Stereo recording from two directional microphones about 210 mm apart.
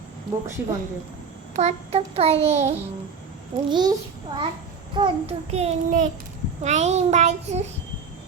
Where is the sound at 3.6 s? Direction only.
20° right (ahead or behind).